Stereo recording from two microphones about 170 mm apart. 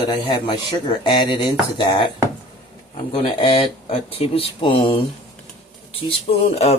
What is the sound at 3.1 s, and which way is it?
Speech, 30° left (ahead or behind).